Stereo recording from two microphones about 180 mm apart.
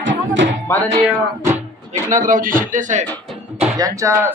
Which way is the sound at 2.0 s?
45° right (ahead or behind).